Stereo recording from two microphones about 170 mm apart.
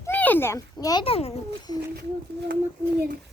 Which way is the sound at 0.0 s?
10° left (ahead or behind).